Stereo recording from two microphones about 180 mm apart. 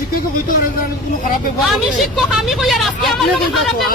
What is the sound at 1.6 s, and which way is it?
Speech, centre (ahead or behind).